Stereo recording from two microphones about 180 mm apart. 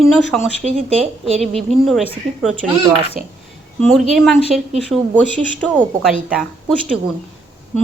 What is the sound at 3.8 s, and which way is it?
A woman's voice, centre (ahead or behind).